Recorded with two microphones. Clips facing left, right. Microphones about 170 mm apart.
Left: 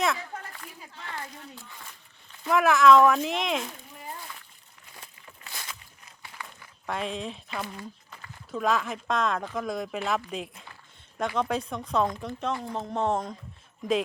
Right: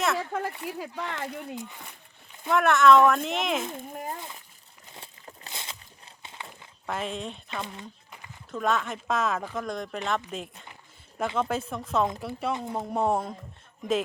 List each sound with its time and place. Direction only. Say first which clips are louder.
0.2 s a sound: right 9 dB; 90° right
0.7 s speech: right 8 dB; 90° right
2.5 s speech: even; centre (ahead or behind)
3.6 s speech: right 5 dB; 50° right (ahead or behind)
4.9 s a sound: right 4 dB; 35° right (ahead or behind)
5.5 s walk: even; 25° right (ahead or behind)
6.8 s speech: even; centre (ahead or behind)
7.5 s a sound: left 1 dB; 20° right (ahead or behind)
8.4 s speech: left 1 dB; centre (ahead or behind)
12.5 s speech: right 2 dB; 20° right (ahead or behind)